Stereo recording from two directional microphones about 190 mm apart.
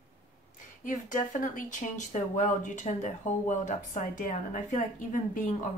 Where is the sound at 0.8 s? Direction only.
45° left (ahead or behind).